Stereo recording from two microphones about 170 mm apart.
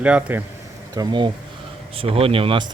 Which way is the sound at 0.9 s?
25° right (ahead or behind).